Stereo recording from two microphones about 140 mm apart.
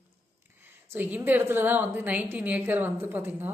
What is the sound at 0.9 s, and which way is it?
Speech, 15° right (ahead or behind).